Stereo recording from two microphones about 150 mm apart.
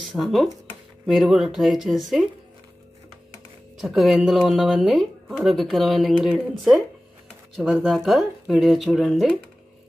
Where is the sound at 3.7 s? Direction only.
Centre (ahead or behind).